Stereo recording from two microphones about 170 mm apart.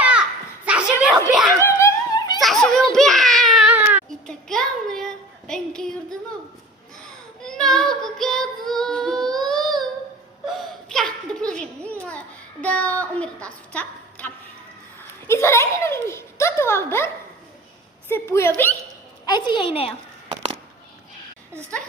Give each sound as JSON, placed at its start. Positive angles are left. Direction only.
{"t": 0.0, "sound": "a sound", "side_deg": -5}
{"t": 1.0, "sound": "speech", "side_deg": -5}
{"t": 1.8, "sound": "a sound", "side_deg": 25}
{"t": 2.4, "sound": "a child's voice", "side_deg": 0}
{"t": 4.3, "sound": "speech", "side_deg": 5}
{"t": 7.4, "sound": "child singing", "side_deg": 5}
{"t": 10.4, "sound": "a sound", "side_deg": 0}
{"t": 12.6, "sound": "a child's voice", "side_deg": 10}
{"t": 18.1, "sound": "a child's voice", "side_deg": 15}
{"t": 19.2, "sound": "a woman's voice", "side_deg": 25}